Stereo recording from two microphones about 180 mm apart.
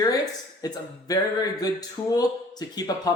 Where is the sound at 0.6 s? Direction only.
20° left (ahead or behind).